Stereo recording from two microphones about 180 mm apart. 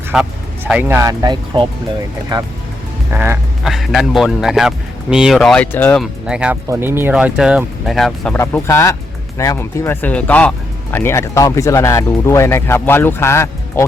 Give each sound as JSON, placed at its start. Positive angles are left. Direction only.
{"t": 0.1, "sound": "speech", "side_deg": -5}
{"t": 3.2, "sound": "speech", "side_deg": -5}
{"t": 6.0, "sound": "speech", "side_deg": -5}